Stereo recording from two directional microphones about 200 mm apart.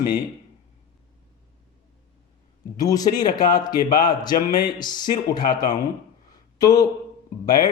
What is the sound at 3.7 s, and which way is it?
Speech, 45° left (ahead or behind).